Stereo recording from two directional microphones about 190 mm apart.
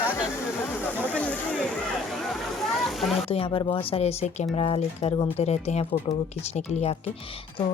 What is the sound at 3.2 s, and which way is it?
Speech, 30° left (ahead or behind).